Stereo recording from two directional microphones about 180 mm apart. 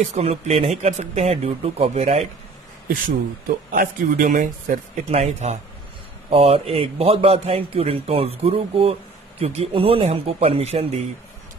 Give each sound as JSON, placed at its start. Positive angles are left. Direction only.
{"t": 0.1, "sound": "a man's voice", "side_deg": -35}
{"t": 3.4, "sound": "a man's voice", "side_deg": -55}